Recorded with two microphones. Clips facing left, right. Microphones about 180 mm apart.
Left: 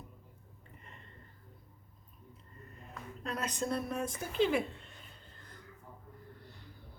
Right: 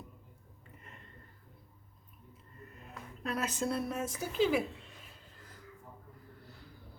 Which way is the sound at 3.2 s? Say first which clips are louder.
Right 2 dB; 5° right (ahead or behind).